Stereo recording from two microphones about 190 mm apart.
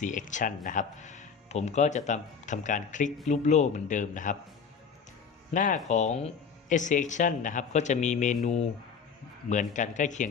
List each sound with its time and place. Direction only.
0.0 s speech: 40° left (ahead or behind)
5.5 s speech: 40° left (ahead or behind)
9.5 s speech: 40° left (ahead or behind)